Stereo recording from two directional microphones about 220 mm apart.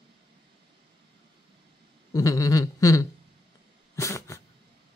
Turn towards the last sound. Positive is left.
turn(degrees=15)  # may be behind; listen again after turning